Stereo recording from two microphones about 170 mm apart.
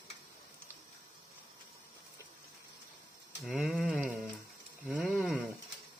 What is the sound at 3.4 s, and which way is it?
Speech, centre (ahead or behind).